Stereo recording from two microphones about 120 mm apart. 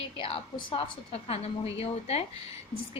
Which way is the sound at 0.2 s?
50° left (ahead or behind).